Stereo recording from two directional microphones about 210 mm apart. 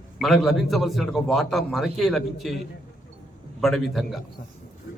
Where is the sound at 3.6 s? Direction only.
Centre (ahead or behind).